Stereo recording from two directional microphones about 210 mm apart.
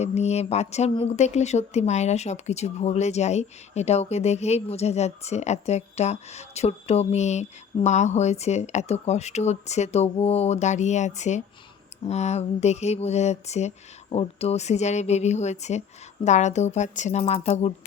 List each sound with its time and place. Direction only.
0.0 s speech: 30° left (ahead or behind)